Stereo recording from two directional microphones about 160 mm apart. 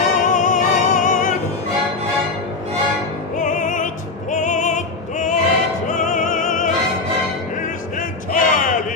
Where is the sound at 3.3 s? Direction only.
55° left (ahead or behind).